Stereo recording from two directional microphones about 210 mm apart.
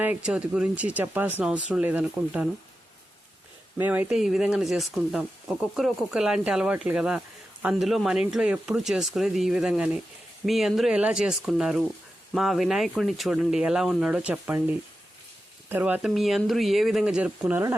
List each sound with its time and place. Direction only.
0.0 s speech: 5° right (ahead or behind)
3.8 s speech: 10° right (ahead or behind)